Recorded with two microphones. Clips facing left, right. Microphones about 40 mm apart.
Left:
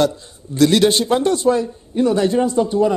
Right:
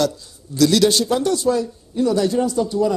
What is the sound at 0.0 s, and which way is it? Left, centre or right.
A man's voice, left.